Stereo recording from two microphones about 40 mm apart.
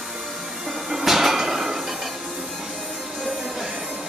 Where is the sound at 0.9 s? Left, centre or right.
Centre.